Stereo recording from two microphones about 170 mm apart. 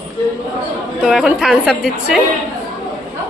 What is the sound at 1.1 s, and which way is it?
A woman's voice, 5° right (ahead or behind).